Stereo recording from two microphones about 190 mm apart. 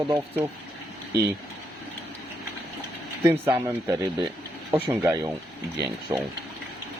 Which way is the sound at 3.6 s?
10° right (ahead or behind).